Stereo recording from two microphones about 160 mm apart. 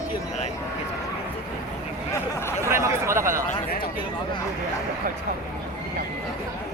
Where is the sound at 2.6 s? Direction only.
15° right (ahead or behind).